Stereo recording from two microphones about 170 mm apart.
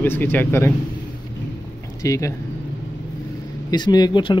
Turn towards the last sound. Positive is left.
turn(degrees=25)  # may be behind; listen again after turning